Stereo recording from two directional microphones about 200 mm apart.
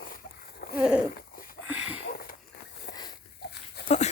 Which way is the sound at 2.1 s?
45° left (ahead or behind).